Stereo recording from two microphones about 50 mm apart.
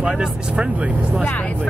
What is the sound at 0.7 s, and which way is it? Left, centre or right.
Vehicle, right.